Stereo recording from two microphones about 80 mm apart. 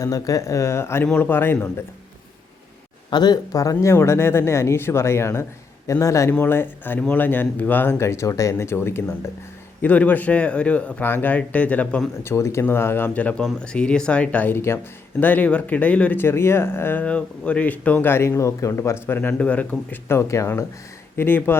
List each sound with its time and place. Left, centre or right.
0.0 s speech: left
3.1 s speech: left
6.4 s speech: left
9.8 s a man's voice: centre
12.2 s a man's voice: left
19.3 s a man's voice: centre
20.1 s speech: left
21.2 s speech: left